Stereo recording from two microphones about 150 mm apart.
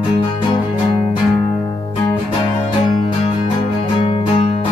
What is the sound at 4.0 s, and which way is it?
Music, 35° left (ahead or behind).